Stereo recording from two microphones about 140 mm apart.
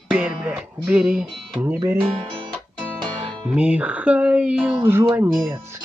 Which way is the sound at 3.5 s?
10° right (ahead or behind).